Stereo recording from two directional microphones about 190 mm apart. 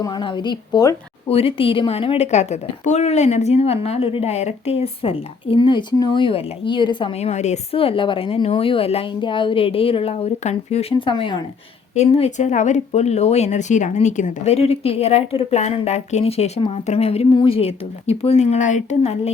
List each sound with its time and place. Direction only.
0.0 s a woman's voice: 25° left (ahead or behind)